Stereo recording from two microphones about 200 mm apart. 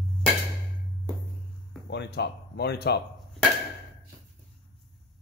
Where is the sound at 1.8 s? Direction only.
60° left (ahead or behind).